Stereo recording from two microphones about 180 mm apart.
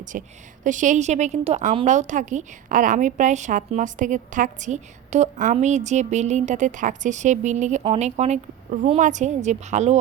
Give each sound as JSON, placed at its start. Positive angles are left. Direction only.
{"t": 0.1, "sound": "a woman's voice", "side_deg": -45}